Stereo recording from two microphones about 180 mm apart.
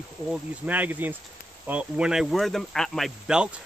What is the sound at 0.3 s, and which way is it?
Speech, 10° right (ahead or behind).